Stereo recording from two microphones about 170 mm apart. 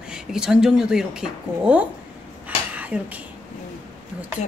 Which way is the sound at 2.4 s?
10° right (ahead or behind).